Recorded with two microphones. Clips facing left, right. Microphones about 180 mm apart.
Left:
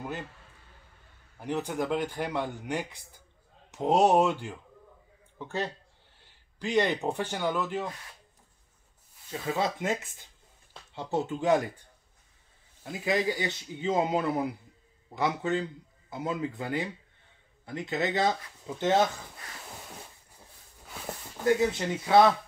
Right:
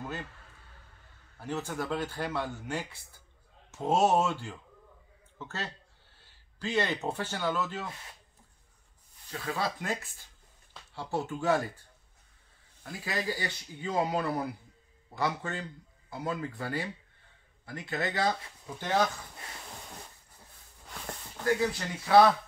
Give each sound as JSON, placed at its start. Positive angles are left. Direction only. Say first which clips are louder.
{"t": 1.4, "sound": "speech", "louder": "left 4 dB", "side_deg": 15}
{"t": 9.3, "sound": "speech", "louder": "left 4 dB", "side_deg": 20}
{"t": 12.8, "sound": "speech", "louder": "left 6 dB", "side_deg": 20}
{"t": 21.5, "sound": "speech", "louder": "left 4 dB", "side_deg": 20}